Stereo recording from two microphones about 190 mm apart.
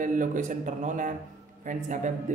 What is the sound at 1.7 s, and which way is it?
Speech, 40° right (ahead or behind).